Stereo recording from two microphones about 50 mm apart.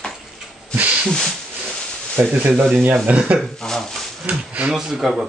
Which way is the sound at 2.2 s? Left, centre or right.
Right.